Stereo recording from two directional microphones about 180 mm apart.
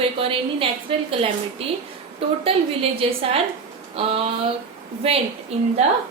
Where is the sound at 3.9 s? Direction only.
35° right (ahead or behind).